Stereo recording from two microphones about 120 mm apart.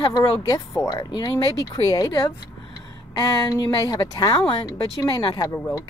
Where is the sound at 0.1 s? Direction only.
30° left (ahead or behind).